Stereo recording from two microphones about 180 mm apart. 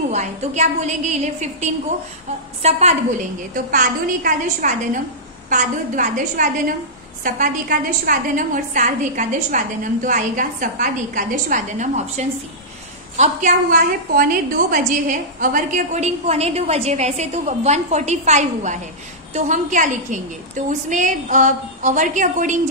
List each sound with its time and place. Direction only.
0.1 s a woman's voice: 40° right (ahead or behind)